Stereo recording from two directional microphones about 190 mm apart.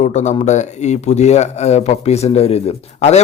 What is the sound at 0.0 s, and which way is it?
Speech, 40° left (ahead or behind).